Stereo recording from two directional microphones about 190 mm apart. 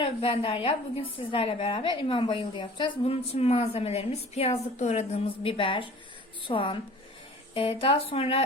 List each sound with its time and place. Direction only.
0.0 s a woman's voice: 30° left (ahead or behind)